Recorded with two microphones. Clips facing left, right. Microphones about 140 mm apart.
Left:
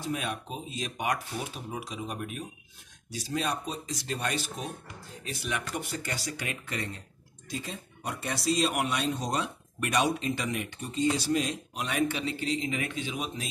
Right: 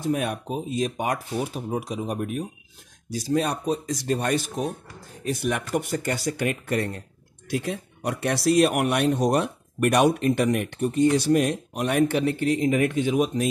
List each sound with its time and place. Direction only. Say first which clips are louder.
0.0 s speech: right 8 dB; 50° right (ahead or behind)
7.4 s speech: right 10 dB; 70° right (ahead or behind); by 13.5 s 45° right (ahead or behind)